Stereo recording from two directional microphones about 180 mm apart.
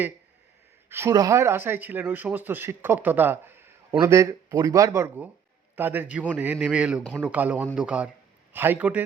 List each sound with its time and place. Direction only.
0.9 s speech: 15° right (ahead or behind)